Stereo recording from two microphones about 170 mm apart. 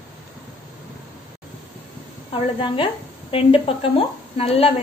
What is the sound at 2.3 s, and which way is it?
A woman's voice, 30° left (ahead or behind).